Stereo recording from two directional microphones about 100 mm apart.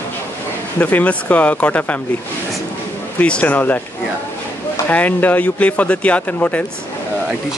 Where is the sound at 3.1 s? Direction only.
15° left (ahead or behind).